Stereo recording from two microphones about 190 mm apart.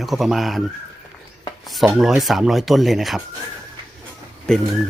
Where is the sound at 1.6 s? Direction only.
Centre (ahead or behind).